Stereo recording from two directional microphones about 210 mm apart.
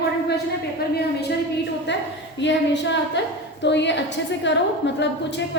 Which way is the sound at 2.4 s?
55° left (ahead or behind).